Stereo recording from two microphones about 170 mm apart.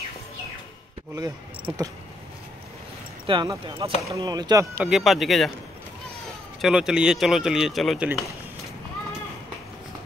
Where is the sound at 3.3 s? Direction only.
25° right (ahead or behind).